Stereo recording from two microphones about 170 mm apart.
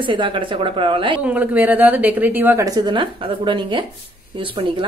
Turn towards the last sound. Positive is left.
turn(degrees=-30)  # may be behind; listen again after turning